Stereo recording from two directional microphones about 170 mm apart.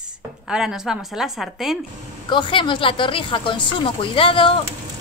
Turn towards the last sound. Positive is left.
turn(degrees=30)  # may be behind; listen again after turning